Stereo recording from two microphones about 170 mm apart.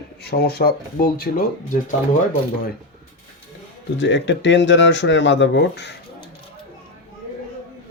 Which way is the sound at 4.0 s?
90° left.